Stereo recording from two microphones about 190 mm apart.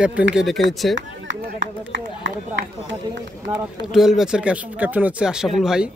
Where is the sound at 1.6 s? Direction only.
75° right (ahead or behind).